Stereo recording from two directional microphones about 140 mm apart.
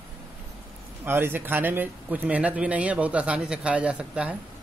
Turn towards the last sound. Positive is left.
turn(degrees=-10)  # may be behind; listen again after turning